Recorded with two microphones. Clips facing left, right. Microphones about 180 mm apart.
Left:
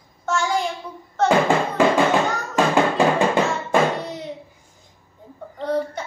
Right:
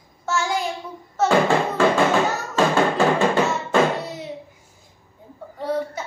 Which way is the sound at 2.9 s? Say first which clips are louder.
Even; 15° left (ahead or behind).